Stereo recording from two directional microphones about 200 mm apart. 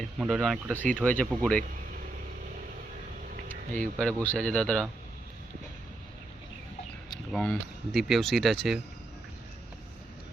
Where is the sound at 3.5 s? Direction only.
40° right (ahead or behind).